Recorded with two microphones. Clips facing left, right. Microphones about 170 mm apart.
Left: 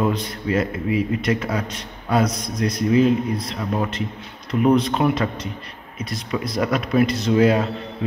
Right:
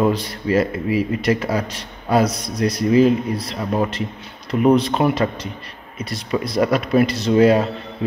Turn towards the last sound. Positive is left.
turn(degrees=0)  # may be behind; listen again after turning